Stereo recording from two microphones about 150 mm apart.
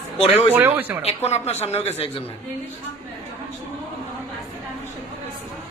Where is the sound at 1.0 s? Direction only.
45° left (ahead or behind).